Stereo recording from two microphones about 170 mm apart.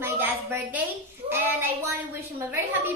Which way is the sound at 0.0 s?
10° right (ahead or behind).